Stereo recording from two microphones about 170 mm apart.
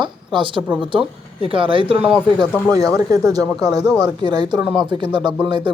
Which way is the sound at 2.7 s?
20° right (ahead or behind).